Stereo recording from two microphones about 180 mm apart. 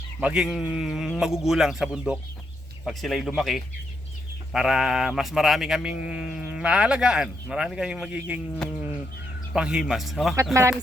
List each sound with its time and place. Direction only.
0.2 s speech: 5° right (ahead or behind)
10.5 s speech: 15° right (ahead or behind)